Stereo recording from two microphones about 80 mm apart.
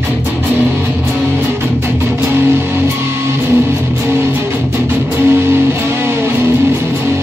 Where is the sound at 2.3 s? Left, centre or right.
Right.